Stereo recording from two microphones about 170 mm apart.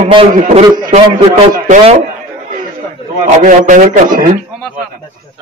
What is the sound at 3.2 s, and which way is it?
Speech, 50° right (ahead or behind).